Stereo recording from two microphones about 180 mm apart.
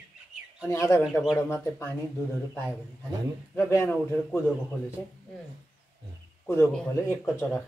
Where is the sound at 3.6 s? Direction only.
15° left (ahead or behind).